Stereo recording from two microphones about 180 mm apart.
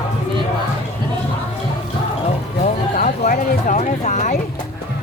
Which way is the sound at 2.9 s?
45° left (ahead or behind).